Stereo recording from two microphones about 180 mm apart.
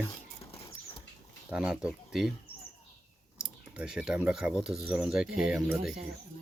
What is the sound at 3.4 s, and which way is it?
Speech, 5° right (ahead or behind).